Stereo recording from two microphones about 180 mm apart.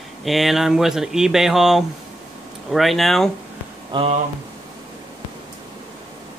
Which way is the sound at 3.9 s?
30° right (ahead or behind).